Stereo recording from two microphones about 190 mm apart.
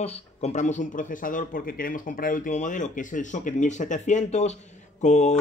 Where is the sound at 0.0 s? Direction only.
35° left (ahead or behind).